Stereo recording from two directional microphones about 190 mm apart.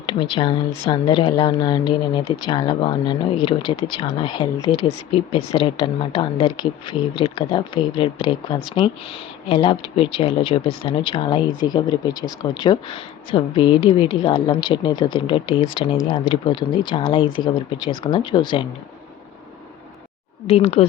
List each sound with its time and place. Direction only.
0.0 s a woman's voice: 25° left (ahead or behind)
20.5 s speech: 30° left (ahead or behind)